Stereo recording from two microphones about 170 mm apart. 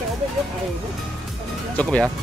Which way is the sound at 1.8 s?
5° left (ahead or behind).